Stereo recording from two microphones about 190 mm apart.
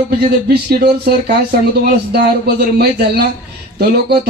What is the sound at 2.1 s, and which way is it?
Speech, 55° right (ahead or behind).